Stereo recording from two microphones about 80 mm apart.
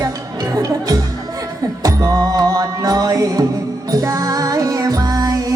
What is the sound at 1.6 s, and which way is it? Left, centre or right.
Music, right.